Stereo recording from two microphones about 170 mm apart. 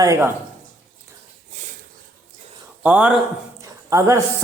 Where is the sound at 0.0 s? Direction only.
20° right (ahead or behind).